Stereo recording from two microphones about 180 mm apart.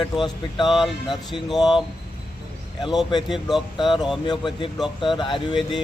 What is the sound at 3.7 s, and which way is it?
Speech, 25° left (ahead or behind).